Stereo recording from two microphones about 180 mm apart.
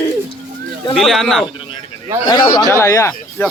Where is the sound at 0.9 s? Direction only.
Centre (ahead or behind).